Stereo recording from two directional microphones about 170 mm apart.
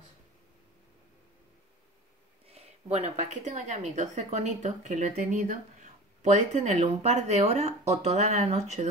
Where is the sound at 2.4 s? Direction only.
35° right (ahead or behind).